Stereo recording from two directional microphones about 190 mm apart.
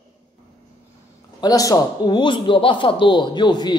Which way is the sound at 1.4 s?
20° left (ahead or behind).